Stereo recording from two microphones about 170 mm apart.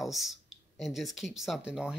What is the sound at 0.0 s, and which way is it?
Speech, centre (ahead or behind).